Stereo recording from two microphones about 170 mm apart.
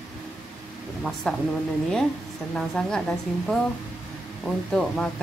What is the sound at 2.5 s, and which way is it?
Speech, 5° left (ahead or behind).